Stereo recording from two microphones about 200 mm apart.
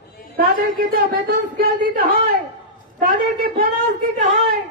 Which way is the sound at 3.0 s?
45° right (ahead or behind).